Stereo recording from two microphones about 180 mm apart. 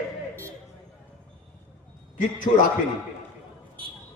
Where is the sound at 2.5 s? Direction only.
35° left (ahead or behind).